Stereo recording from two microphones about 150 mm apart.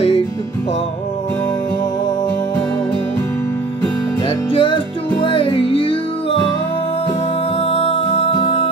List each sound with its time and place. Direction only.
4.5 s music: 35° left (ahead or behind)
7.6 s music: 40° left (ahead or behind)